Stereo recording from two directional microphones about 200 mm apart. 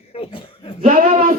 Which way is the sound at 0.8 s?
35° right (ahead or behind).